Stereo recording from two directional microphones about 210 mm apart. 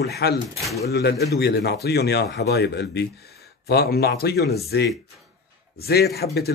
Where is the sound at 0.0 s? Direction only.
50° left (ahead or behind).